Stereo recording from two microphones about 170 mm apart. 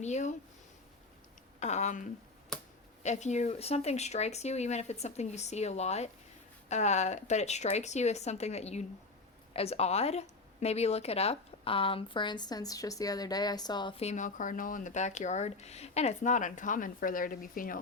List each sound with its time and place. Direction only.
0.0 s a woman's voice: 45° left (ahead or behind)
1.5 s a woman's voice: 40° left (ahead or behind)